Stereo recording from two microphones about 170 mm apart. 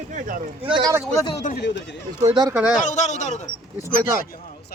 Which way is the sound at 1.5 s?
90° left.